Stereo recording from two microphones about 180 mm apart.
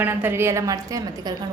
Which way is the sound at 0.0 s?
10° right (ahead or behind).